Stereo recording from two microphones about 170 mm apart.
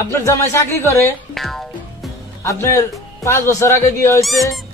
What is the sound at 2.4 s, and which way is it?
A man's voice, 15° left (ahead or behind).